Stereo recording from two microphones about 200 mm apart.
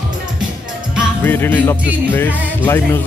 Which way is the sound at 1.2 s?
10° left (ahead or behind).